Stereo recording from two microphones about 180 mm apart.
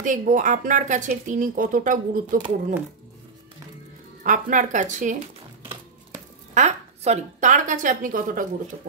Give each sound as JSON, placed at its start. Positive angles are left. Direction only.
{"t": 0.0, "sound": "speech", "side_deg": -45}
{"t": 4.2, "sound": "speech", "side_deg": -45}
{"t": 6.5, "sound": "a woman's voice", "side_deg": -40}